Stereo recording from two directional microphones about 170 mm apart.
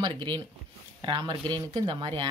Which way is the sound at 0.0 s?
25° right (ahead or behind).